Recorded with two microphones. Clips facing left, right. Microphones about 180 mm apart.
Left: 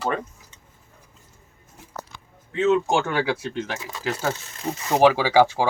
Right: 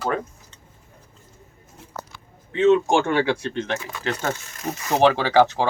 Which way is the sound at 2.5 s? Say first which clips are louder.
Right 3 dB; centre (ahead or behind).